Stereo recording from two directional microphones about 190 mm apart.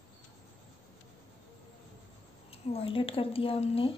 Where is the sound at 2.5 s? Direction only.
30° left (ahead or behind).